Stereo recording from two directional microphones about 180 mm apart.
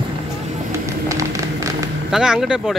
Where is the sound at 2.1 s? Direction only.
5° right (ahead or behind).